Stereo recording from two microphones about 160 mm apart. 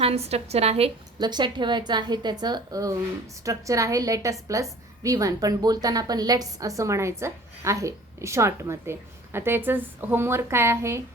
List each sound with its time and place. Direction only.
0.0 s a woman's voice: 40° right (ahead or behind)
1.2 s a woman's voice: 25° right (ahead or behind)